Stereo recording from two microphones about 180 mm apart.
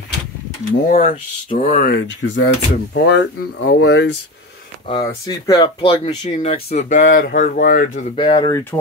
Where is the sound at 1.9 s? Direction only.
90° left.